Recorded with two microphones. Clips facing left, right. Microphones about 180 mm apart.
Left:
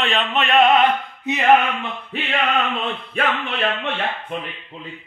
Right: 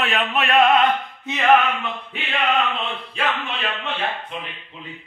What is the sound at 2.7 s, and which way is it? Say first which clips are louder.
Speech: left 3 dB; 55° left (ahead or behind).